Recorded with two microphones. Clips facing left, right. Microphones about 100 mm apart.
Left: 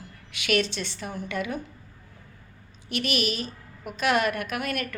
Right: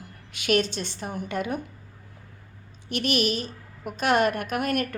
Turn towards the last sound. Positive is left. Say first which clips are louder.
# right 4 dB
turn(degrees=-45)  # may be behind; listen again after turning